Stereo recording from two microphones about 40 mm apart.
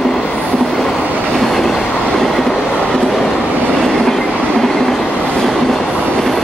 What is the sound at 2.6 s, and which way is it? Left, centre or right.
Train, left.